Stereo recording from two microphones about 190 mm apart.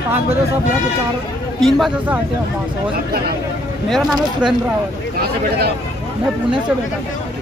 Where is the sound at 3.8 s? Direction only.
Centre (ahead or behind).